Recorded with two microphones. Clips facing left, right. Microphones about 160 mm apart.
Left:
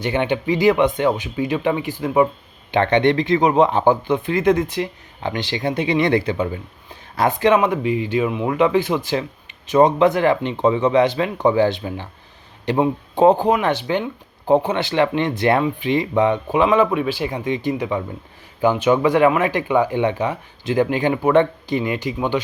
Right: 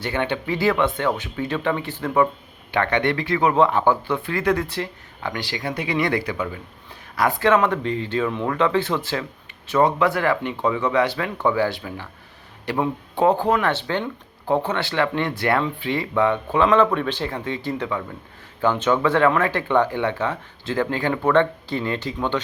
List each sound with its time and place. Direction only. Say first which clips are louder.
0.0 s speech: left 4 dB; 20° left (ahead or behind)